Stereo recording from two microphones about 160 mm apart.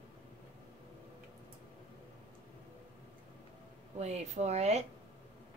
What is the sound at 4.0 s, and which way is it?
Speech, 45° right (ahead or behind).